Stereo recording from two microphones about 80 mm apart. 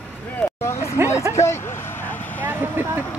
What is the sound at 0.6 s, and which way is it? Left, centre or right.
Hubbub, left.